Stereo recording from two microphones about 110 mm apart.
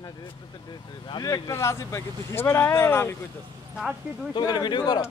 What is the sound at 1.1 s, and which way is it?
Speech, 35° left (ahead or behind).